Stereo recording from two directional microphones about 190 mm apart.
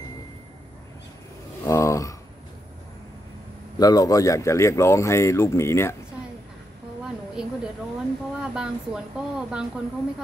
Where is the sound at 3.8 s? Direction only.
20° left (ahead or behind).